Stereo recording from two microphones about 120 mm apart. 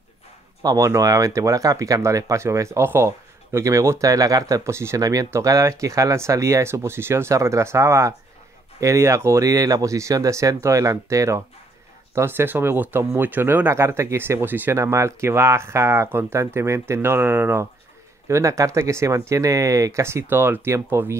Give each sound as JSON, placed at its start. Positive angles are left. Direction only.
{"t": 0.6, "sound": "speech", "side_deg": -30}